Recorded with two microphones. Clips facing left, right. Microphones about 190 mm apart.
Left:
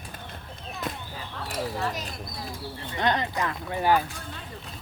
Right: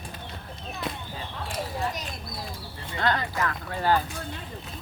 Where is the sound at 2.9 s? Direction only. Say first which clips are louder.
Left 1 dB; 20° left (ahead or behind).